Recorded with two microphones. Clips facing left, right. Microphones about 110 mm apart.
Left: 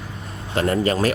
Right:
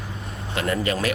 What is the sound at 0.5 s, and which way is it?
Speech, 35° left (ahead or behind).